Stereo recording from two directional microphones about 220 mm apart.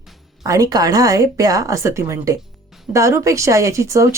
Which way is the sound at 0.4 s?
15° right (ahead or behind).